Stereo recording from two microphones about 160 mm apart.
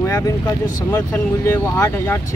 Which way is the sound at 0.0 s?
15° left (ahead or behind).